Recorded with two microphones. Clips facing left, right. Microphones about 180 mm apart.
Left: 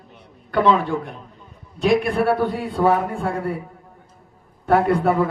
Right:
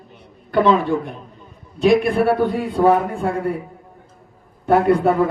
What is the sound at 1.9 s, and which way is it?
Speech, 15° right (ahead or behind).